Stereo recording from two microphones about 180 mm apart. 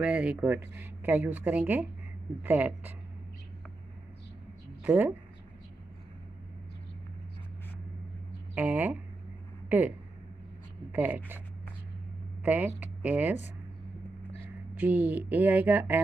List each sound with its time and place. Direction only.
0.0 s speech: 5° right (ahead or behind)
4.8 s speech: 10° right (ahead or behind)
8.5 s speech: 10° right (ahead or behind)
12.4 s speech: 10° right (ahead or behind)
14.8 s speech: 10° right (ahead or behind)